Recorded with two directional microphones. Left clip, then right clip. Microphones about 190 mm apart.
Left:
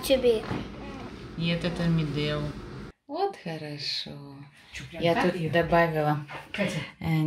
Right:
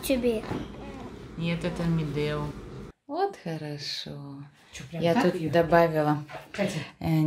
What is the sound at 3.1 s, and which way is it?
Speech, 15° right (ahead or behind).